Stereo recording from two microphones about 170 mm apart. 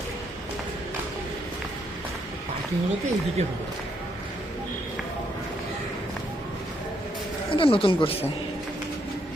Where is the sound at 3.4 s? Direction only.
40° right (ahead or behind).